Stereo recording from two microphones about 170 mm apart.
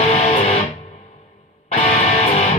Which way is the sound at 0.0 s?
40° left (ahead or behind).